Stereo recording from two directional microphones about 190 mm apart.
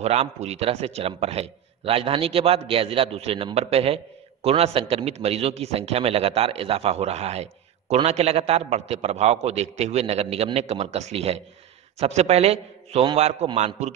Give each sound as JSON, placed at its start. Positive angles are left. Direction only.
{"t": 0.0, "sound": "a man's voice", "side_deg": -35}